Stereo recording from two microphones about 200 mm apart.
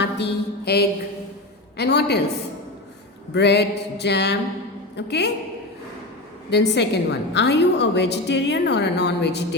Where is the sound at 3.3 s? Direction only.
55° left (ahead or behind).